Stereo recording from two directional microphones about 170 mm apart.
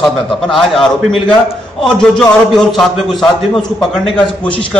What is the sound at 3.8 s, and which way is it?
Speech, centre (ahead or behind).